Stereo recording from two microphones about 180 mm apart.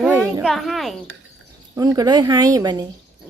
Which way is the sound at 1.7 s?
20° right (ahead or behind).